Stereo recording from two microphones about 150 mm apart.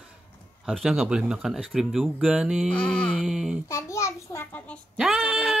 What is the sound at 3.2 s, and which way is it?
Speech, 5° right (ahead or behind).